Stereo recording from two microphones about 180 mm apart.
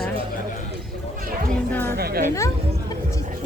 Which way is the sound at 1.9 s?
60° right (ahead or behind).